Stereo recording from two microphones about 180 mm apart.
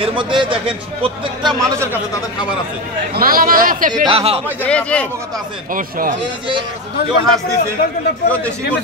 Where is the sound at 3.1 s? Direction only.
55° right (ahead or behind).